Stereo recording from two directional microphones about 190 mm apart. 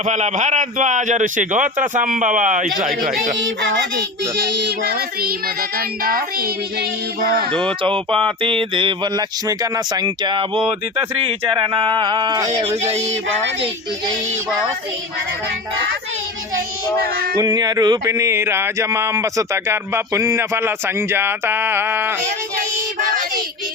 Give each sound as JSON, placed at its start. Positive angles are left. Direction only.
{"t": 0.0, "sound": "a man's voice", "side_deg": -40}
{"t": 3.3, "sound": "music", "side_deg": -80}
{"t": 4.4, "sound": "child singing", "side_deg": -65}
{"t": 7.8, "sound": "speech", "side_deg": -25}
{"t": 12.5, "sound": "a man's voice", "side_deg": -35}
{"t": 17.3, "sound": "a sound", "side_deg": -20}